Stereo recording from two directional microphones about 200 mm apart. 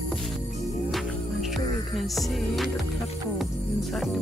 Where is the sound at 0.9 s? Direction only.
Centre (ahead or behind).